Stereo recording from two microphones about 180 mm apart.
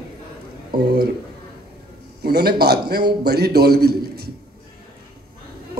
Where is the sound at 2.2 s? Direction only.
60° right (ahead or behind).